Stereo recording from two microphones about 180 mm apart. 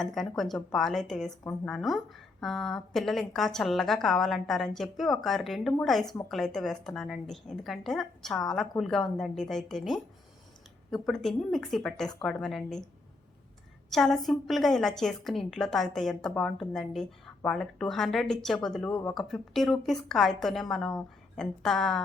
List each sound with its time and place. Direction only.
0.0 s a woman's voice: centre (ahead or behind)
13.9 s a woman's voice: centre (ahead or behind)
18.9 s speech: 15° left (ahead or behind)
19.1 s a woman's voice: centre (ahead or behind)